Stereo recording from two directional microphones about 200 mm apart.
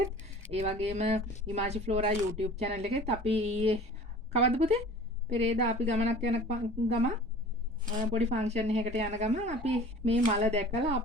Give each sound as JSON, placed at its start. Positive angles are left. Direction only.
{"t": 0.5, "sound": "speech", "side_deg": -35}
{"t": 7.9, "sound": "speech", "side_deg": -40}